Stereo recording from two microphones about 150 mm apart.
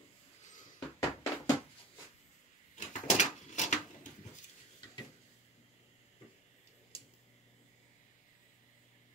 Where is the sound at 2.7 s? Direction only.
55° left (ahead or behind).